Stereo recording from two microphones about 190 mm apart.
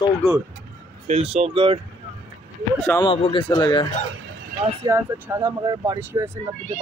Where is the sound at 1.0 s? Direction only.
30° right (ahead or behind).